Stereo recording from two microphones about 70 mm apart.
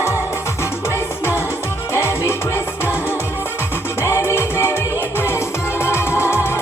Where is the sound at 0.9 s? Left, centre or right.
Left.